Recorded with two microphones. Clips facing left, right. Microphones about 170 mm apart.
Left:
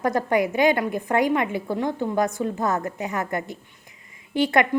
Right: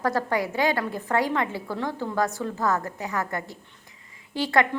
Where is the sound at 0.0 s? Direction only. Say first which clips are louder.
Left 4 dB; 20° left (ahead or behind).